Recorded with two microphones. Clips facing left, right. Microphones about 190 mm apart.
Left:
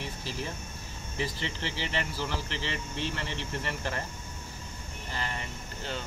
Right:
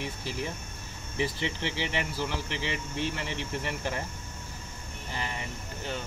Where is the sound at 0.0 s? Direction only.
15° right (ahead or behind).